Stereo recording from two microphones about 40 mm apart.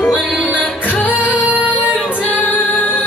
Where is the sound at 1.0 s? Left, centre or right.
Left.